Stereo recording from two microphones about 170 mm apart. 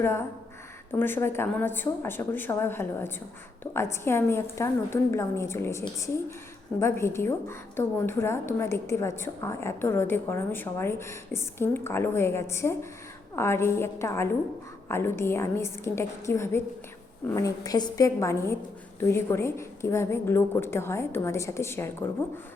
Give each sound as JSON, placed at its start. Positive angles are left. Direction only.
{"t": 0.0, "sound": "a woman's voice", "side_deg": 15}